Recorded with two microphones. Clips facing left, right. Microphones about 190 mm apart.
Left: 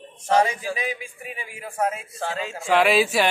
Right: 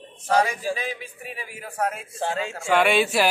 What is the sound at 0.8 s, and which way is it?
A man's voice, 5° left (ahead or behind).